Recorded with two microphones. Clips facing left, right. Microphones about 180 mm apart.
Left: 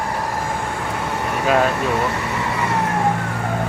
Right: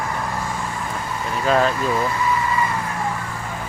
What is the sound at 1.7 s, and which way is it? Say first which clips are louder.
Vehicle: left 1 dB; 70° left (ahead or behind).